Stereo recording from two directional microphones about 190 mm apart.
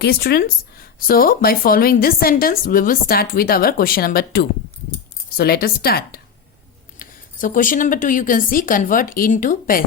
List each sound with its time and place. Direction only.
0.0 s a woman's voice: 55° left (ahead or behind)
5.4 s a woman's voice: 55° left (ahead or behind)